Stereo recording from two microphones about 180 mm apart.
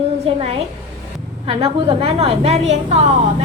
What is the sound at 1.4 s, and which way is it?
A woman's voice, 35° right (ahead or behind).